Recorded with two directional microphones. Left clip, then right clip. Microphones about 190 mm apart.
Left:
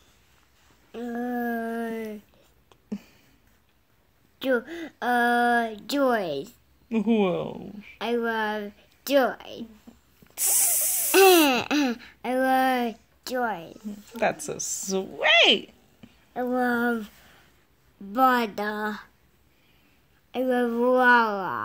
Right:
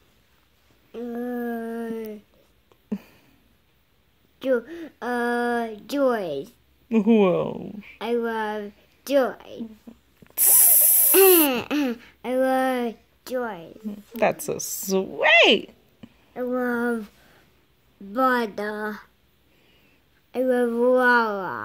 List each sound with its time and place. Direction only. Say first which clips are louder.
0.9 s a sound: even; 5° right (ahead or behind)
2.9 s a sound: right 4 dB; 35° right (ahead or behind)
4.4 s speech: right 2 dB; centre (ahead or behind)
6.9 s speech: right 5 dB; 35° right (ahead or behind)
8.0 s a woman's voice: right 1 dB; 10° right (ahead or behind)
10.2 s a sound: right 2 dB; 40° right (ahead or behind)
11.1 s speech: even; centre (ahead or behind)
14.1 s speech: right 3 dB; 40° right (ahead or behind)
16.3 s a woman's voice: even; 10° right (ahead or behind)
18.1 s speech: even; 5° right (ahead or behind)
20.2 s a woman's voice: right 3 dB; 10° right (ahead or behind)